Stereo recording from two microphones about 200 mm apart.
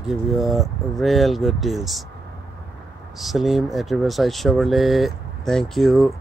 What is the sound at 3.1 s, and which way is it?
Speech, centre (ahead or behind).